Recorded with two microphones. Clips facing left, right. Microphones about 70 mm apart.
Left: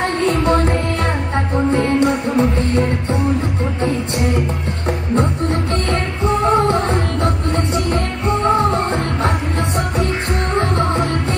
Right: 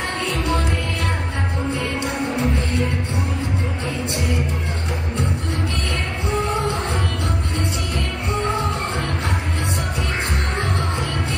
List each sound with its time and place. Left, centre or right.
0.2 s music: left
5.1 s music: left